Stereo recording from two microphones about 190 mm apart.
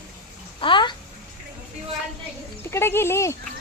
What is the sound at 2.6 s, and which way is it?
Speech, 15° left (ahead or behind).